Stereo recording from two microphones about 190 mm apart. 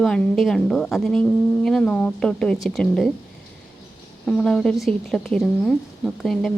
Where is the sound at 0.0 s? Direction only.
Centre (ahead or behind).